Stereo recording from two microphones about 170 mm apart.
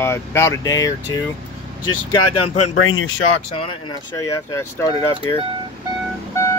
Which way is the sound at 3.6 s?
20° left (ahead or behind).